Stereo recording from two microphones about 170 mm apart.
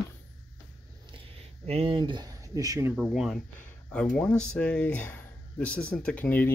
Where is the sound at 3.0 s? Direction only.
5° right (ahead or behind).